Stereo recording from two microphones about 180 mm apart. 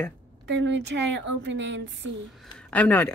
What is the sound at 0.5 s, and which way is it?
A woman's voice, 80° right.